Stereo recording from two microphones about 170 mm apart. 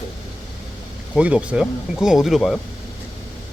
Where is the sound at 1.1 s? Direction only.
5° right (ahead or behind).